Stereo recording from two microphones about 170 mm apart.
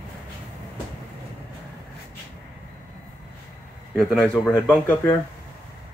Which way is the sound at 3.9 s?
Centre (ahead or behind).